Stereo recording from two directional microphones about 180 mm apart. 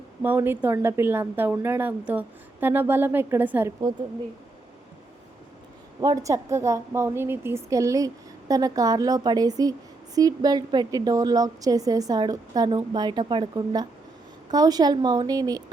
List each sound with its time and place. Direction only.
0.2 s a woman's voice: 10° right (ahead or behind)
6.0 s a woman's voice: 20° right (ahead or behind)